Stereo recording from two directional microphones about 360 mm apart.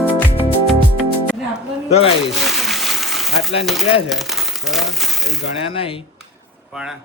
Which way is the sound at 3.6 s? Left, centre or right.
Centre.